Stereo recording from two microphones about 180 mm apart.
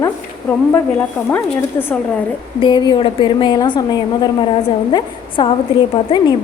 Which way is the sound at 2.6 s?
25° left (ahead or behind).